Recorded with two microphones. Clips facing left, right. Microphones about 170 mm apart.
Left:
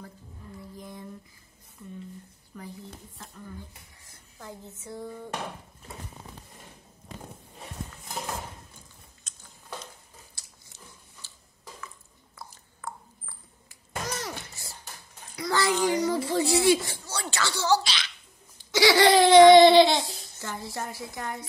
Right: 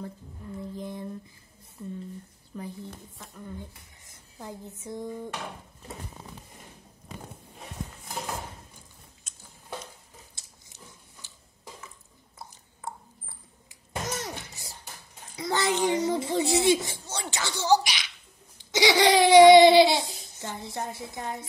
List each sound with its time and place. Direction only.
0.7 s mantra: 25° right (ahead or behind)
4.0 s a sound: 20° right (ahead or behind)
10.4 s biting: 25° right (ahead or behind)
11.2 s a sound: 15° right (ahead or behind)
18.7 s laughter: 20° right (ahead or behind)
20.3 s a woman's voice: 20° right (ahead or behind)